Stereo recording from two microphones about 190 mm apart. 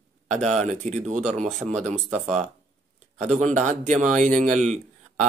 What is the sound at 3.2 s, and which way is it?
Speech, 40° right (ahead or behind).